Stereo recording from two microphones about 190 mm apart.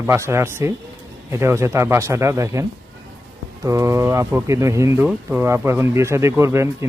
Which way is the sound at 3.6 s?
15° right (ahead or behind).